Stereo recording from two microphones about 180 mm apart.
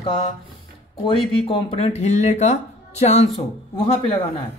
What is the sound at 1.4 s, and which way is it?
Speech, 30° left (ahead or behind).